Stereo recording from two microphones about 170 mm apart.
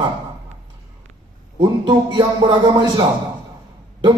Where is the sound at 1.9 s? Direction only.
25° right (ahead or behind).